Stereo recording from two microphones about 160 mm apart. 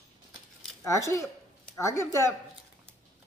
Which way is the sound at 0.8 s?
20° left (ahead or behind).